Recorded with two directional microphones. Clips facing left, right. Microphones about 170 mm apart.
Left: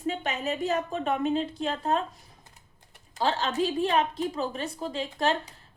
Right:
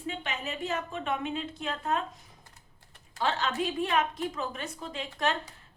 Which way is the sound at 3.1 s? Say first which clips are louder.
Left 3 dB; 35° left (ahead or behind).